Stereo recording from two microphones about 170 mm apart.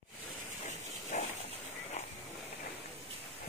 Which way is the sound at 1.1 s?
45° left (ahead or behind).